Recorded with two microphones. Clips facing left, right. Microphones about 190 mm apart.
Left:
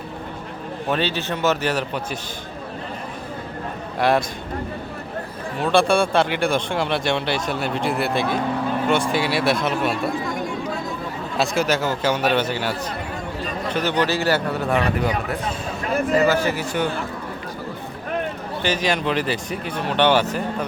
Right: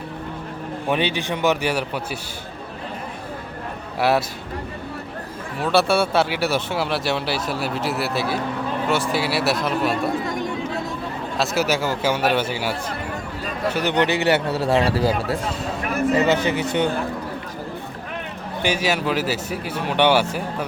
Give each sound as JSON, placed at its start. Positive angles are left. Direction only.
{"t": 0.9, "sound": "speech", "side_deg": -15}
{"t": 4.0, "sound": "speech", "side_deg": -5}
{"t": 5.6, "sound": "speech", "side_deg": -5}
{"t": 11.3, "sound": "speech", "side_deg": -5}
{"t": 13.9, "sound": "speech", "side_deg": -20}
{"t": 16.1, "sound": "speech", "side_deg": -20}
{"t": 18.6, "sound": "speech", "side_deg": -10}